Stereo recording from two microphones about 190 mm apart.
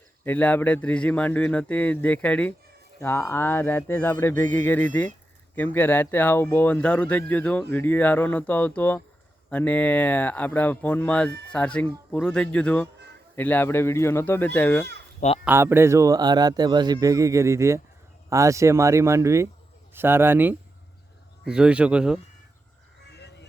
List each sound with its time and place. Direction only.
0.3 s speech: 10° left (ahead or behind)
15.4 s a man's voice: 10° right (ahead or behind)
23.0 s a sound: 60° left (ahead or behind)